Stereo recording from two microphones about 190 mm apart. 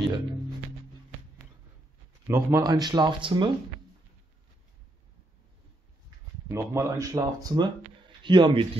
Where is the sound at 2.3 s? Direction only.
15° right (ahead or behind).